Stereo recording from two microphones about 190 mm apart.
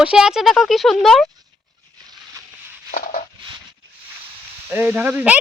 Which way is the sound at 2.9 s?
40° left (ahead or behind).